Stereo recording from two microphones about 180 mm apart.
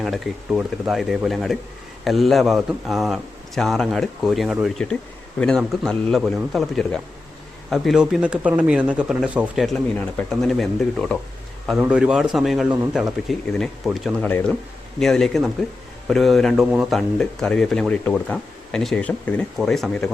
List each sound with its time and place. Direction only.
0.0 s speech: centre (ahead or behind)
11.7 s speech: 5° right (ahead or behind)
14.3 s speech: 10° left (ahead or behind)